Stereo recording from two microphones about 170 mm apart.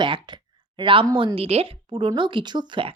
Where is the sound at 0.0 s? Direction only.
30° right (ahead or behind).